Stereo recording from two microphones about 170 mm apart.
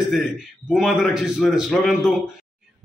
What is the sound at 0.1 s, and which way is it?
A man's voice, centre (ahead or behind).